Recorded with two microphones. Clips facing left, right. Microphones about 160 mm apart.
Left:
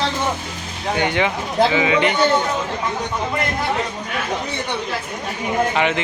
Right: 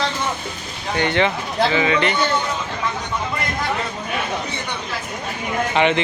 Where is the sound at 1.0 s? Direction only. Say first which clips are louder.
Right 2 dB; 10° left (ahead or behind).